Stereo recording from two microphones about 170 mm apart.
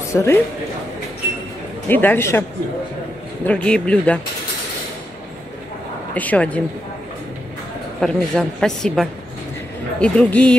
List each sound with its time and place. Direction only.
0.1 s speech: 15° left (ahead or behind)
1.9 s speech: 10° left (ahead or behind)
3.4 s speech: 5° left (ahead or behind)
6.1 s speech: 10° left (ahead or behind)
8.0 s a woman's voice: 5° left (ahead or behind)